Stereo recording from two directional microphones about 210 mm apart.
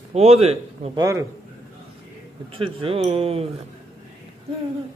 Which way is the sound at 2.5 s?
25° right (ahead or behind).